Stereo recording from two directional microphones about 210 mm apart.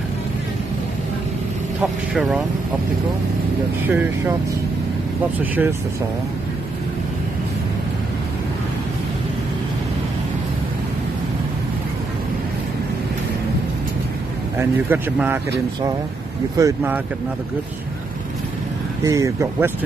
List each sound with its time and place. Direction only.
1.8 s speech: 5° right (ahead or behind)
3.8 s speech: 10° right (ahead or behind)
5.4 s speech: 10° right (ahead or behind)
14.6 s speech: 10° right (ahead or behind)
16.5 s speech: 15° right (ahead or behind)
19.0 s speech: 15° right (ahead or behind)